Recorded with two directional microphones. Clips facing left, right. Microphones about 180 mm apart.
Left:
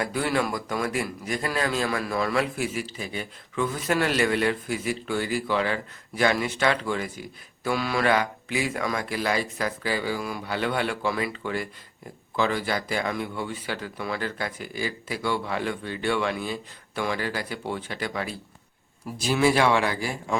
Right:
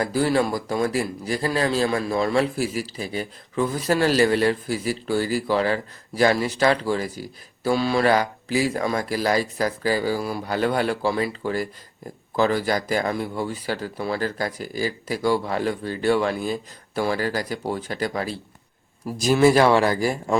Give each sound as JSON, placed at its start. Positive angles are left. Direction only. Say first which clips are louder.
{"t": 0.0, "sound": "speech", "louder": "right 5 dB", "side_deg": -35}